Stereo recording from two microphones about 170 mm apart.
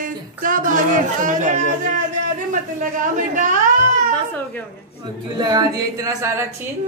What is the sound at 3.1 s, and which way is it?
Speech, 50° right (ahead or behind).